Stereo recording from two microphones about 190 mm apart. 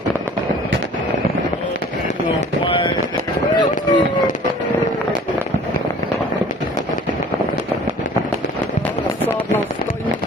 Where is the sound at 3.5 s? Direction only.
25° left (ahead or behind).